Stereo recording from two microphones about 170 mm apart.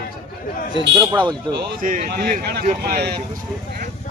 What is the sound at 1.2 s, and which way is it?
Speech, 25° right (ahead or behind).